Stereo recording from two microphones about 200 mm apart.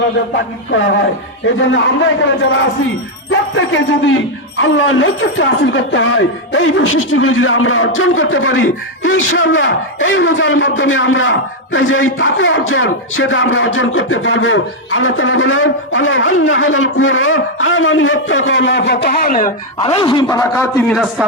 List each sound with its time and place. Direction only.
0.7 s speech: 65° left (ahead or behind); by 19.5 s 45° left (ahead or behind)
19.8 s a man's voice: 20° left (ahead or behind)
20.9 s speech: 5° right (ahead or behind)